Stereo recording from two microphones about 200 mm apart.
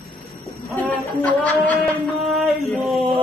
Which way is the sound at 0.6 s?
Centre (ahead or behind).